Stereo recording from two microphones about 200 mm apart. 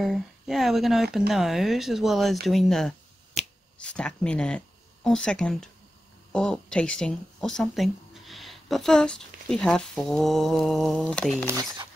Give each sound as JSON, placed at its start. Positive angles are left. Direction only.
{"t": 0.0, "sound": "speech", "side_deg": 0}
{"t": 3.4, "sound": "finger snapping", "side_deg": 35}
{"t": 3.7, "sound": "speech", "side_deg": 5}